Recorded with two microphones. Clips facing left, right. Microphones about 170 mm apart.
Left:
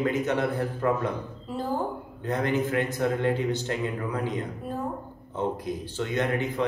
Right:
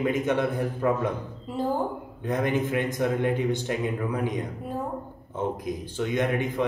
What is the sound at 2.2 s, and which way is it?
A man's voice, 15° right (ahead or behind).